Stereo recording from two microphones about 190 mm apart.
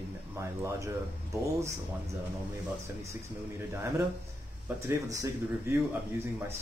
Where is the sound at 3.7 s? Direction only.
15° right (ahead or behind).